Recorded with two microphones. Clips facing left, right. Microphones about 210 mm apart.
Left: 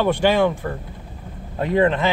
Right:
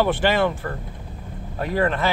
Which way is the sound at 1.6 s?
20° left (ahead or behind).